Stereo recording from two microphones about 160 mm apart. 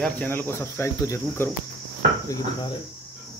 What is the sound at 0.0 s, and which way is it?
Cricket, 10° left (ahead or behind).